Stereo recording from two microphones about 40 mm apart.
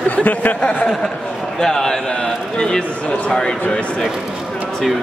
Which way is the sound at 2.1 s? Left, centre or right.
Left.